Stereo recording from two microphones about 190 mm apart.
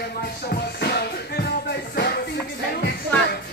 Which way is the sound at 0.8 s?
60° left (ahead or behind).